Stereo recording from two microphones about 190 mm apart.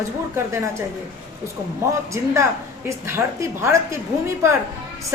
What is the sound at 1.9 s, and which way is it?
A woman's voice, 15° right (ahead or behind).